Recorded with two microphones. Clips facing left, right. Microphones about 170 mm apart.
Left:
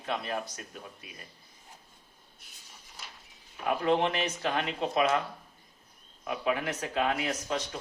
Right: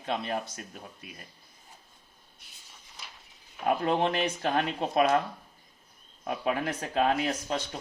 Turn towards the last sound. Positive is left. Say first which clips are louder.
# right 1 dB
turn(degrees=-30)  # may be behind; listen again after turning